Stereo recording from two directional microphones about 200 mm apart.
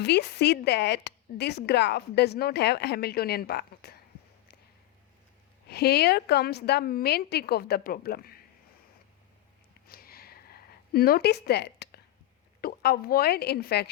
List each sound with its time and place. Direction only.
0.0 s speech: 55° left (ahead or behind)
5.6 s a woman's voice: 55° left (ahead or behind)
9.8 s a sound: 50° left (ahead or behind)
12.6 s a woman's voice: 50° left (ahead or behind)